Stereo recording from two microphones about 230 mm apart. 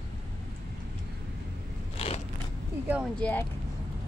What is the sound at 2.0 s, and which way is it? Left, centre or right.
Biting, left.